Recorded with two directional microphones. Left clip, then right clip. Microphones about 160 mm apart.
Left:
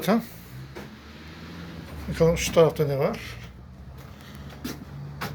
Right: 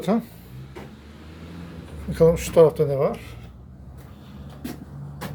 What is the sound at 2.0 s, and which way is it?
Speech, 30° right (ahead or behind).